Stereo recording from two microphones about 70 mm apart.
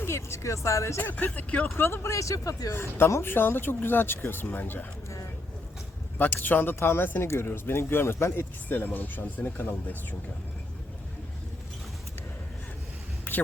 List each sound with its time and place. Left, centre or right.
0.0 s speech: left
1.0 s speech: left
1.7 s speech: left
6.1 s speech: left
13.3 s a sound: left